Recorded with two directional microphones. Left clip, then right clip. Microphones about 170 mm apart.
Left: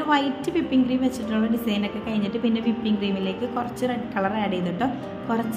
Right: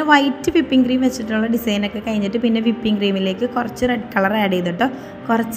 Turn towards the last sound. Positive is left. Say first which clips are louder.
# right 7 dB
turn(degrees=-30)  # may be behind; listen again after turning